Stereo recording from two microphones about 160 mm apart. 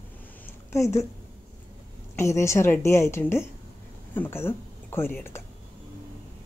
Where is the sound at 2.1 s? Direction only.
15° left (ahead or behind).